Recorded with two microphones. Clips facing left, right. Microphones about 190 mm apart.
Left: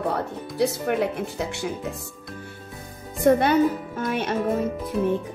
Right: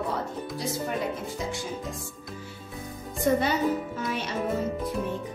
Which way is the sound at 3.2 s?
60° left (ahead or behind).